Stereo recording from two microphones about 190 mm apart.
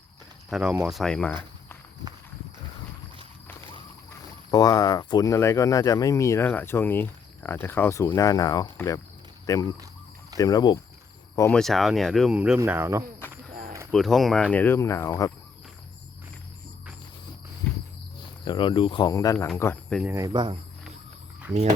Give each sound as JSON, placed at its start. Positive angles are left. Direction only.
{"t": 0.5, "sound": "speech", "side_deg": -5}
{"t": 4.5, "sound": "speech", "side_deg": 20}
{"t": 11.3, "sound": "speech", "side_deg": 10}
{"t": 13.9, "sound": "speech", "side_deg": 0}
{"t": 18.4, "sound": "speech", "side_deg": 25}
{"t": 20.1, "sound": "speech", "side_deg": -15}